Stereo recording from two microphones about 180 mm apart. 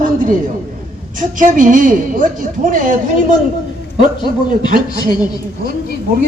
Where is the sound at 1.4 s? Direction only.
45° right (ahead or behind).